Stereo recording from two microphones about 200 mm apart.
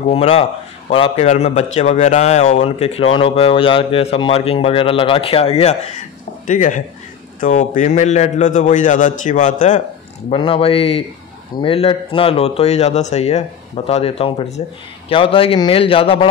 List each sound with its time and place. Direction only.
0.0 s a man's voice: 35° left (ahead or behind)
10.3 s a man's voice: 25° left (ahead or behind)